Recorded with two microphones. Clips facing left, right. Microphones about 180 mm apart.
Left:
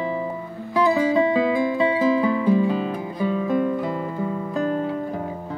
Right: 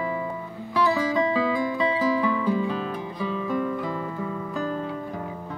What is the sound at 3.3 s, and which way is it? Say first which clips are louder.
Guitar: left 5 dB; 35° left (ahead or behind).